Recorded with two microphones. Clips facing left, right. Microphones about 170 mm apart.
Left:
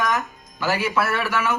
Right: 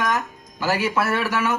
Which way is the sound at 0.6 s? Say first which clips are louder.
Even; 40° right (ahead or behind).